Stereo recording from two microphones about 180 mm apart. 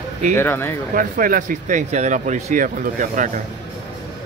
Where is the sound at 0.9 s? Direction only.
50° right (ahead or behind).